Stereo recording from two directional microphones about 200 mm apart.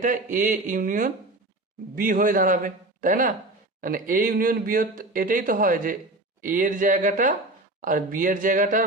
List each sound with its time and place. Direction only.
0.0 s speech: 40° right (ahead or behind)